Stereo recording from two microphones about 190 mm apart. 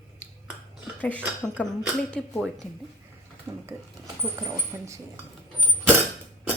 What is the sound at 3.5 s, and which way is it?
Speech, 15° right (ahead or behind).